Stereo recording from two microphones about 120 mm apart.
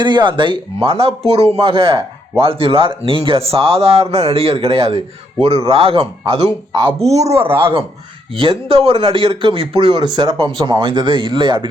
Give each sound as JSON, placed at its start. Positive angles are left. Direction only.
{"t": 0.0, "sound": "speech", "side_deg": -40}
{"t": 7.0, "sound": "speech", "side_deg": -65}
{"t": 7.4, "sound": "speech", "side_deg": -50}